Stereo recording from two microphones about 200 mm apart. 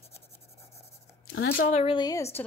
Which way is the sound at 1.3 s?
50° left (ahead or behind).